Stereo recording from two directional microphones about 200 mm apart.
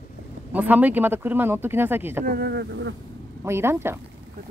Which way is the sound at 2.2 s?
50° right (ahead or behind).